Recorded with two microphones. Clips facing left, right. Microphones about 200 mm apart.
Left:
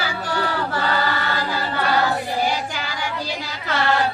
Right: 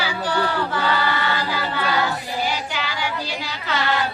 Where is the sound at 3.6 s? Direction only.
45° left (ahead or behind).